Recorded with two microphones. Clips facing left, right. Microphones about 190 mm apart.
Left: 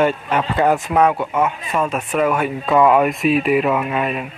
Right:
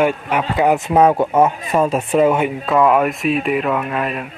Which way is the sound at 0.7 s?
25° right (ahead or behind).